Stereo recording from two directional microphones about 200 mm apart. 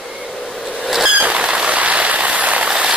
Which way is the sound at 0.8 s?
Centre (ahead or behind).